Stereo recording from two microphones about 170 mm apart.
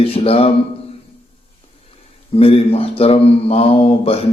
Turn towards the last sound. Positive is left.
turn(degrees=35)  # may be behind; listen again after turning